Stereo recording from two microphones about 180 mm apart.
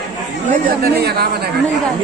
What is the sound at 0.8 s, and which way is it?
Speech, 60° right (ahead or behind).